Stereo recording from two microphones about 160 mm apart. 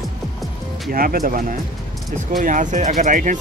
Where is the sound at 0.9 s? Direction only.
65° right (ahead or behind).